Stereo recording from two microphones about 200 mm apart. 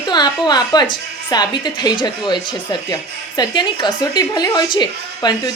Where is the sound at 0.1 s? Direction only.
20° left (ahead or behind).